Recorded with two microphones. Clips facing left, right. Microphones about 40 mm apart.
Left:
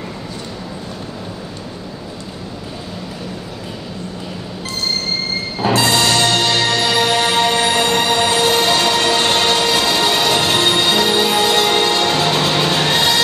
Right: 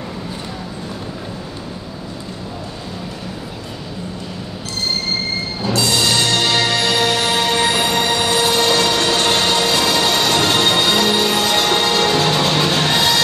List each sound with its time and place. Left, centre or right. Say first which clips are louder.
6.1 s music: left 1 dB; centre